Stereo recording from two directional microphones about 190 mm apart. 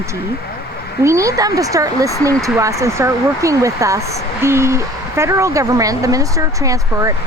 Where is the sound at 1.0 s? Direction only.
15° right (ahead or behind).